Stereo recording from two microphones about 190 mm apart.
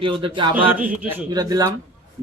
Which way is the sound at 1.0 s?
10° right (ahead or behind).